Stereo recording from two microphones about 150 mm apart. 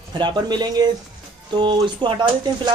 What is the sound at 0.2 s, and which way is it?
Speech, 30° right (ahead or behind).